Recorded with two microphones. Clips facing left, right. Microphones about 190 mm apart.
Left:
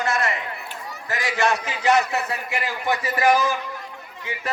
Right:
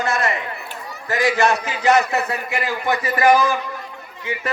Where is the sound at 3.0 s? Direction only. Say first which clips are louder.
Right 4 dB; 60° right (ahead or behind).